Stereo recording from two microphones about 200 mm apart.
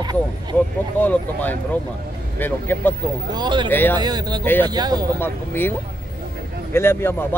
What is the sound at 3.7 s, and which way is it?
Speech, 10° left (ahead or behind).